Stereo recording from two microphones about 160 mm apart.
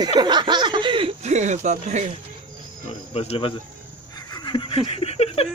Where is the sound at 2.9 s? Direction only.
40° left (ahead or behind).